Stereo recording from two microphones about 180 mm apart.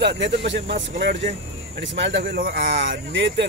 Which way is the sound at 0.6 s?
45° right (ahead or behind).